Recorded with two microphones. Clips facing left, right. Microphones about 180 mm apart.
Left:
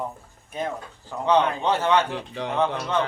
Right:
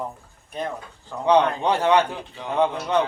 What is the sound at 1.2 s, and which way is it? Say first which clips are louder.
Speech: right 2 dB; 15° right (ahead or behind).